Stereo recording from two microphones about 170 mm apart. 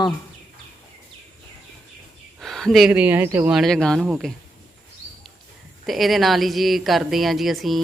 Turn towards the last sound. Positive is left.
turn(degrees=0)  # may be behind; listen again after turning